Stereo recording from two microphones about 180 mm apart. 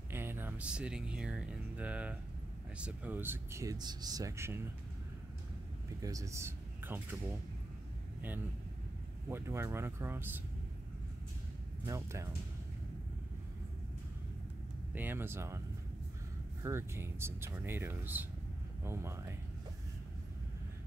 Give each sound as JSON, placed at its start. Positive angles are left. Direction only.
{"t": 0.1, "sound": "speech", "side_deg": -10}
{"t": 6.0, "sound": "speech", "side_deg": -15}
{"t": 9.3, "sound": "speech", "side_deg": -15}
{"t": 11.8, "sound": "speech", "side_deg": -15}
{"t": 15.0, "sound": "speech", "side_deg": -10}
{"t": 16.6, "sound": "speech", "side_deg": -15}